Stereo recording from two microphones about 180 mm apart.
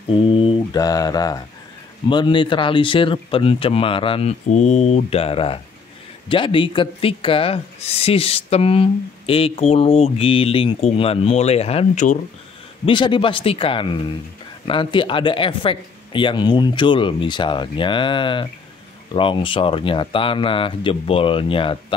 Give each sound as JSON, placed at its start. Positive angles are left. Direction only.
{"t": 0.3, "sound": "speech", "side_deg": 30}
{"t": 12.8, "sound": "speech", "side_deg": 25}